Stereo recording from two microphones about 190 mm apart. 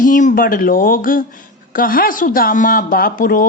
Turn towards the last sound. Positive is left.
turn(degrees=45)  # may be behind; listen again after turning